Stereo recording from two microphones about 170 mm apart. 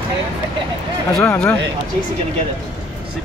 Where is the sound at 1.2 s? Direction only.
5° left (ahead or behind).